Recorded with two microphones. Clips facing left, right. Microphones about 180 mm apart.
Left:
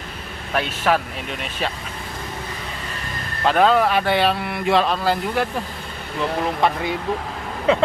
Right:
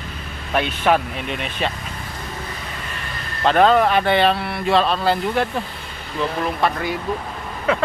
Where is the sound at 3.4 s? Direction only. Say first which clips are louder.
Right 2 dB; 5° left (ahead or behind).